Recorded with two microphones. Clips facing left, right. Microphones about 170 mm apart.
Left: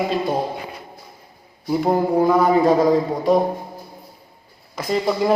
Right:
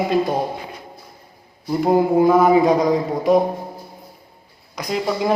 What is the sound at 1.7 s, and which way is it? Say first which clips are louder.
Speech: even; centre (ahead or behind).